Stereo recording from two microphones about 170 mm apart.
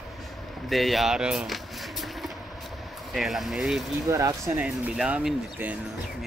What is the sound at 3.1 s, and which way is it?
Speech, centre (ahead or behind).